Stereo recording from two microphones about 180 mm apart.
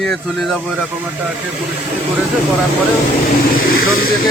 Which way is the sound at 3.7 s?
55° left (ahead or behind).